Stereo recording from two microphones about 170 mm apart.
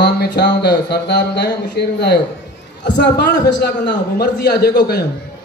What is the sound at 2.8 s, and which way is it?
A man's voice, 90° left.